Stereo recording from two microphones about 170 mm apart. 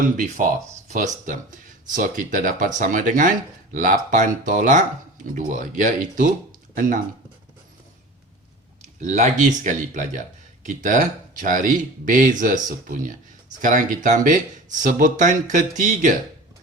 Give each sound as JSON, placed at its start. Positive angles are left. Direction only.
{"t": 0.9, "sound": "speech", "side_deg": -45}
{"t": 9.0, "sound": "speech", "side_deg": -45}